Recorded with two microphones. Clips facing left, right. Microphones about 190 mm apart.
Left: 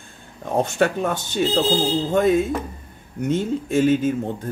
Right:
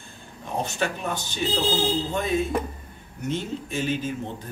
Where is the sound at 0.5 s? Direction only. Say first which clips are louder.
Left 8 dB; 55° left (ahead or behind).